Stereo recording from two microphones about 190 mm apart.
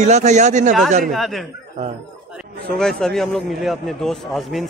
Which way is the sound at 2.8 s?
5° left (ahead or behind).